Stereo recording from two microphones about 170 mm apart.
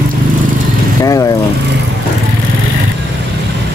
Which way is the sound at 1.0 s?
20° left (ahead or behind).